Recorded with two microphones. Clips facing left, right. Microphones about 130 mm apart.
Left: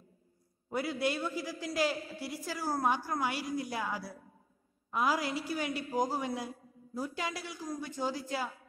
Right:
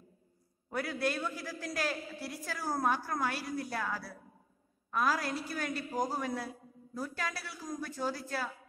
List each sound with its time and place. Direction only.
0.7 s a man's voice: 10° left (ahead or behind)